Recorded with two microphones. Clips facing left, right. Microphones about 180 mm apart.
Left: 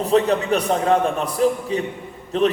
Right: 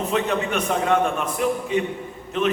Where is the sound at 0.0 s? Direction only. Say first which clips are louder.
Left 5 dB; 35° left (ahead or behind).